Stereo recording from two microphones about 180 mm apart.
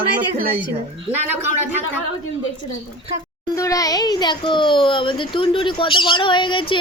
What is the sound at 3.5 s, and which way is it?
A child's voice, 20° left (ahead or behind).